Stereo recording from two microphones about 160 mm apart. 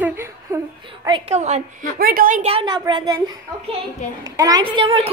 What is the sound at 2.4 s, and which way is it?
Speech, 35° right (ahead or behind).